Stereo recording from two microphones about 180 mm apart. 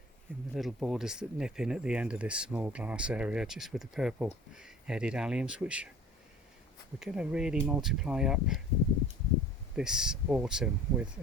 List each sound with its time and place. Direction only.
0.5 s speech: centre (ahead or behind)
7.0 s speech: 5° right (ahead or behind)
9.7 s speech: 5° right (ahead or behind)